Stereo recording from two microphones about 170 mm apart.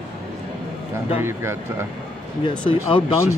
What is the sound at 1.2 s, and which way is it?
Speech, 15° right (ahead or behind).